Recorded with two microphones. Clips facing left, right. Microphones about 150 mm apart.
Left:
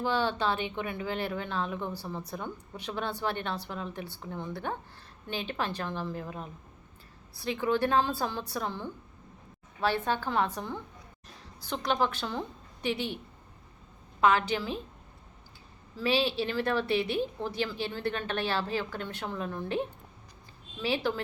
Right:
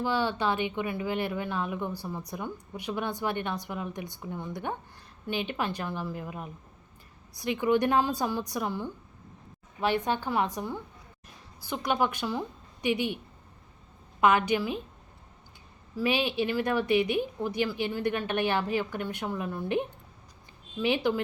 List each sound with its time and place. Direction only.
0.0 s speech: 10° right (ahead or behind)
14.2 s speech: 15° right (ahead or behind)
16.0 s speech: 15° right (ahead or behind)
20.8 s speech: 15° right (ahead or behind)